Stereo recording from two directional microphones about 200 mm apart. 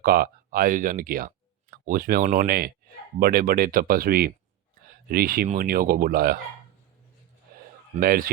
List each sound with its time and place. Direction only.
0.0 s speech: 45° right (ahead or behind)
7.9 s speech: 45° right (ahead or behind)